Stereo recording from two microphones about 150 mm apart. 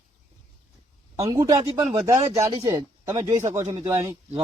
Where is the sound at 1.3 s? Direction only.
25° right (ahead or behind).